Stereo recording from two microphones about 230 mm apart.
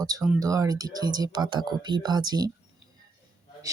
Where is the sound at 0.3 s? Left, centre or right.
Centre.